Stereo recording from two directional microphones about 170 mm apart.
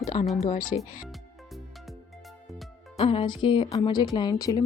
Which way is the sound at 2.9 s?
35° left (ahead or behind).